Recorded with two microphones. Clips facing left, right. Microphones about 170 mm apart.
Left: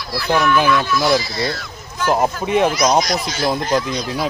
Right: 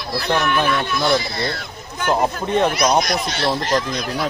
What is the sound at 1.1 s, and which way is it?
Speech, 55° right (ahead or behind).